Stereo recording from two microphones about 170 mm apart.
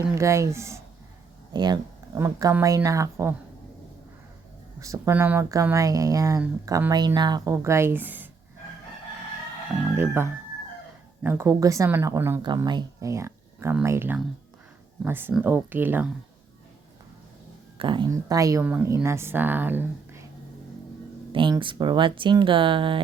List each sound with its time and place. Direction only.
0.0 s speech: 15° right (ahead or behind)
4.8 s speech: 20° right (ahead or behind)
11.2 s speech: 15° right (ahead or behind)
17.7 s speech: 30° right (ahead or behind); by 20.2 s 10° right (ahead or behind)
21.5 s speech: 25° right (ahead or behind)